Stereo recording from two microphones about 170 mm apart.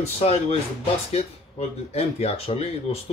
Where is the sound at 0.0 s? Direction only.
35° left (ahead or behind).